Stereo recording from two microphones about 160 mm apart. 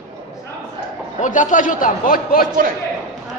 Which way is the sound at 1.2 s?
55° left (ahead or behind).